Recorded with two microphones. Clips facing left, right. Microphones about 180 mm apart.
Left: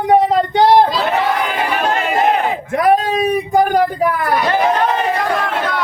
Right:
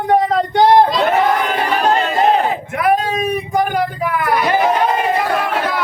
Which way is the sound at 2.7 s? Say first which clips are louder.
Left 3 dB; 30° left (ahead or behind).